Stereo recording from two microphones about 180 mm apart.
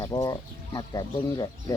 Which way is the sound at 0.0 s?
20° left (ahead or behind).